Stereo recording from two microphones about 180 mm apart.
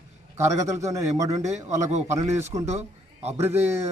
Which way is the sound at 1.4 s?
40° right (ahead or behind).